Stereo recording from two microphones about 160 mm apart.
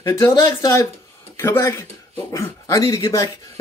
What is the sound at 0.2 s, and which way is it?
Speech, 20° left (ahead or behind).